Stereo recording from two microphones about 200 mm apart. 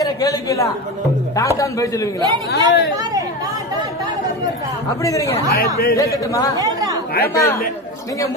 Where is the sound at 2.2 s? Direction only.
20° right (ahead or behind).